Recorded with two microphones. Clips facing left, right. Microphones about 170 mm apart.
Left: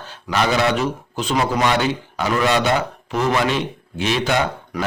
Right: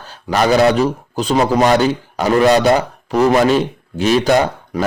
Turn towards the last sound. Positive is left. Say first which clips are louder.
# right 6 dB
turn(degrees=-40)  # may be behind; listen again after turning